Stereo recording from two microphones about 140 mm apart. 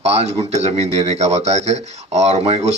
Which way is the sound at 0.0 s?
50° right (ahead or behind).